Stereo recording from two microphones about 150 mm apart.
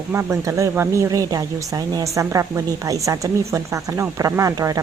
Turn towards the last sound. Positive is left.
turn(degrees=-20)  # may be behind; listen again after turning